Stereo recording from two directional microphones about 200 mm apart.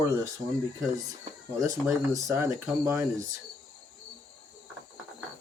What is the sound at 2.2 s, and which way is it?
Speech, 15° right (ahead or behind).